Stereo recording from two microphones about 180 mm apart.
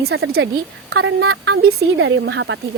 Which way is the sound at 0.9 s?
90° right.